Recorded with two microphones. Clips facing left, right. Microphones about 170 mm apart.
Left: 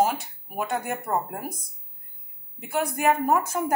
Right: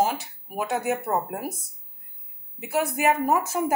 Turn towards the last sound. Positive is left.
turn(degrees=-5)  # may be behind; listen again after turning